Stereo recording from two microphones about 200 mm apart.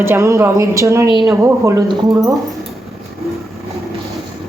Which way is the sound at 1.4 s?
15° right (ahead or behind).